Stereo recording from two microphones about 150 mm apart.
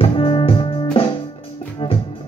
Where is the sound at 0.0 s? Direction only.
35° left (ahead or behind).